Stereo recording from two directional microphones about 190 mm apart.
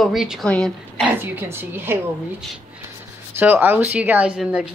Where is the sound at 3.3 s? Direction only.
10° right (ahead or behind).